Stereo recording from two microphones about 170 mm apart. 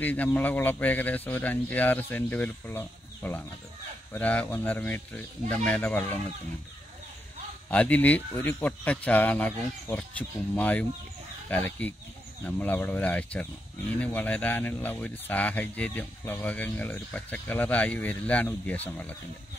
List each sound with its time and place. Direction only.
0.0 s speech: 10° left (ahead or behind)
7.7 s speech: 10° left (ahead or behind)